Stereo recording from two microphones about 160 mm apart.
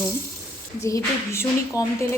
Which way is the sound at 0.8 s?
20° left (ahead or behind).